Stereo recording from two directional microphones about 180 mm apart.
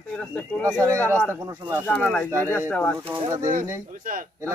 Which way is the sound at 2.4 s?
10° left (ahead or behind).